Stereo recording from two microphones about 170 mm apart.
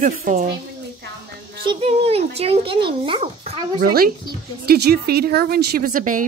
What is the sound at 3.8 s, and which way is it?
A woman's voice, 55° right (ahead or behind).